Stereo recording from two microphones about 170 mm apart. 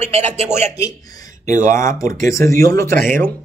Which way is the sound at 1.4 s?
50° right (ahead or behind).